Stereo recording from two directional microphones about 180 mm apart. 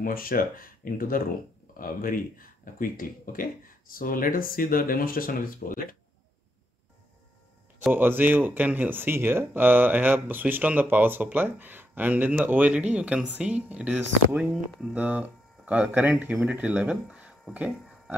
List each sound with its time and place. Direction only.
0.0 s speech: 50° left (ahead or behind)
7.8 s speech: 10° right (ahead or behind)